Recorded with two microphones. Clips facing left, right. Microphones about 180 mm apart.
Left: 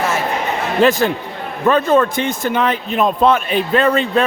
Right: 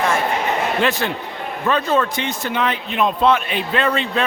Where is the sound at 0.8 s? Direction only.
45° left (ahead or behind).